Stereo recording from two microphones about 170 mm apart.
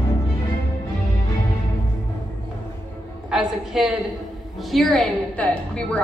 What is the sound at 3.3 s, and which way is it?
A woman's voice, centre (ahead or behind).